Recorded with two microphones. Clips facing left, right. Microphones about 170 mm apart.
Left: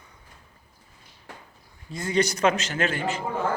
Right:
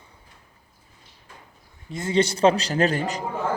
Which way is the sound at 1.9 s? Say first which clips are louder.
Right 2 dB; 25° right (ahead or behind).